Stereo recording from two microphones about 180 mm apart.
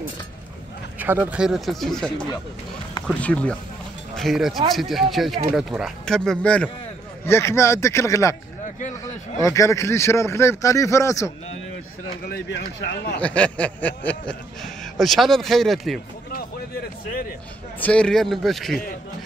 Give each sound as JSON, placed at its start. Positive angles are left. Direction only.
{"t": 0.9, "sound": "speech", "side_deg": -10}
{"t": 12.3, "sound": "speech", "side_deg": 75}
{"t": 13.2, "sound": "speech", "side_deg": 5}
{"t": 17.7, "sound": "speech", "side_deg": 5}